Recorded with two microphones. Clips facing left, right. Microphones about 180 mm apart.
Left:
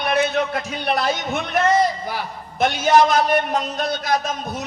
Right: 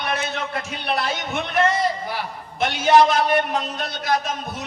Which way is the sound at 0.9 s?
40° left (ahead or behind).